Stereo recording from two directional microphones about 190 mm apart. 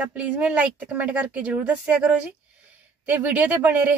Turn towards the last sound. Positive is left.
turn(degrees=-10)  # may be behind; listen again after turning